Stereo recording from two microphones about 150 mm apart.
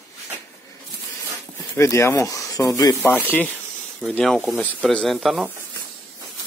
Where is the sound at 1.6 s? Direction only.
20° left (ahead or behind); by 5.5 s centre (ahead or behind).